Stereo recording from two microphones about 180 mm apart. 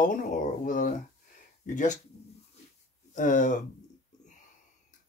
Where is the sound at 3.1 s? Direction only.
45° left (ahead or behind).